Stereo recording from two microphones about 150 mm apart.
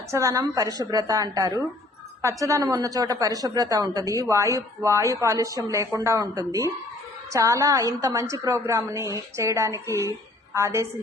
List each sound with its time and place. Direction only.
0.1 s a woman's voice: 20° right (ahead or behind)